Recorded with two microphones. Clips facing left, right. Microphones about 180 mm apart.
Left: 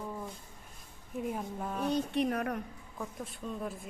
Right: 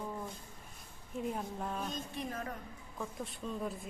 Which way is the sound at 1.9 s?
70° left (ahead or behind).